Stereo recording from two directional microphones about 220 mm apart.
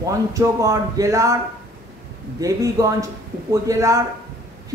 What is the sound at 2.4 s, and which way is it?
Speech, 15° right (ahead or behind).